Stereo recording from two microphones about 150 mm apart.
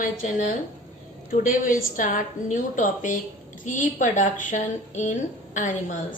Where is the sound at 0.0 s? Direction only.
60° left (ahead or behind).